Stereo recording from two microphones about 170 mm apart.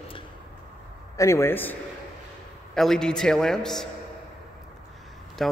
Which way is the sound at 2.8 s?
5° left (ahead or behind).